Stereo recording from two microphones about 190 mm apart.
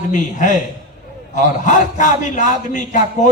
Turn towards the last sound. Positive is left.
turn(degrees=40)  # may be behind; listen again after turning